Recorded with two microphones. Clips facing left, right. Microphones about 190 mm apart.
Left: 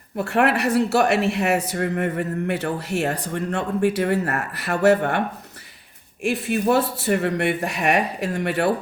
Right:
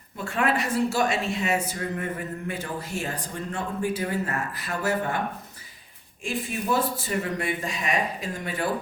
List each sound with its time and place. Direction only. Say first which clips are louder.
0.2 s speech: left 6 dB; 70° left (ahead or behind)
6.2 s speech: left 8 dB; 70° left (ahead or behind)